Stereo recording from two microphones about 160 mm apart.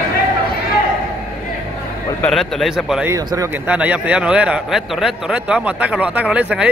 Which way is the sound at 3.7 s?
10° right (ahead or behind).